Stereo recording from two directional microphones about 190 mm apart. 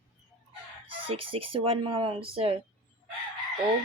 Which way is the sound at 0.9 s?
30° right (ahead or behind).